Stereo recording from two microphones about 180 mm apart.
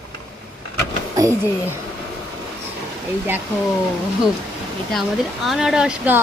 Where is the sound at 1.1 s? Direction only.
20° right (ahead or behind).